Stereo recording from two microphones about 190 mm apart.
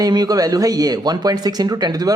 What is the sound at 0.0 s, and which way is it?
Speech, 20° right (ahead or behind).